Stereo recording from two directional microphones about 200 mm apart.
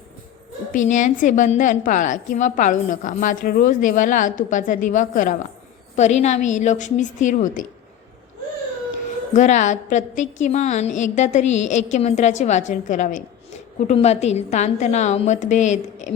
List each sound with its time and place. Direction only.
0.7 s a woman's voice: 40° left (ahead or behind)
9.3 s a woman's voice: 35° left (ahead or behind)